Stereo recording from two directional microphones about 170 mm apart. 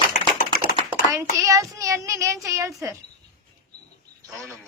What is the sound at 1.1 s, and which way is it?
A child's voice, 20° right (ahead or behind).